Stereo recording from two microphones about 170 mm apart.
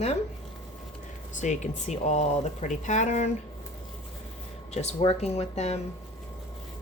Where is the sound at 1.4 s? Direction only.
45° left (ahead or behind).